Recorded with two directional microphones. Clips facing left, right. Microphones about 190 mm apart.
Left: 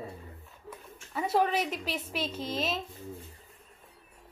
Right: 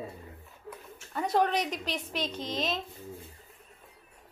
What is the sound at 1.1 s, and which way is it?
A woman's voice, 5° left (ahead or behind).